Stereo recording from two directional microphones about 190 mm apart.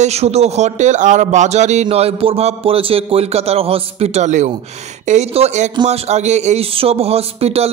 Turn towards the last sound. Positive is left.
turn(degrees=-30)  # may be behind; listen again after turning